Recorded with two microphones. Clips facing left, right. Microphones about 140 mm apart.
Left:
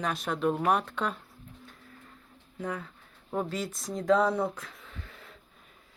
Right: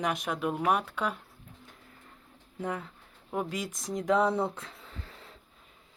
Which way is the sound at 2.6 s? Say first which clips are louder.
Right 1 dB; 20° right (ahead or behind).